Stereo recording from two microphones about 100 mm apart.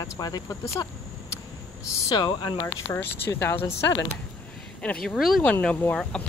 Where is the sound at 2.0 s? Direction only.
50° left (ahead or behind).